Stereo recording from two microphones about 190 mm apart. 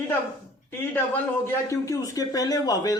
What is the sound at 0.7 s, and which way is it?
A man's voice, 10° left (ahead or behind).